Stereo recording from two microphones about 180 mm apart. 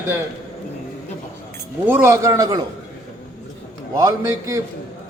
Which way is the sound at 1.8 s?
10° right (ahead or behind).